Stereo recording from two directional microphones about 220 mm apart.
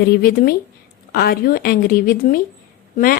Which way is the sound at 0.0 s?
45° left (ahead or behind).